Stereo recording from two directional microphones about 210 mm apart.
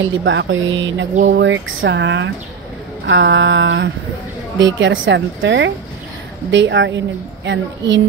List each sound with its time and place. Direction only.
0.0 s speech: 65° right (ahead or behind)